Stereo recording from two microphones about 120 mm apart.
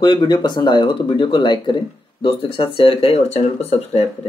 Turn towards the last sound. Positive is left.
turn(degrees=60)  # may be behind; listen again after turning